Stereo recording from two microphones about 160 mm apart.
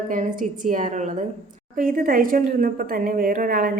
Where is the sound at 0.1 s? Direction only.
55° right (ahead or behind).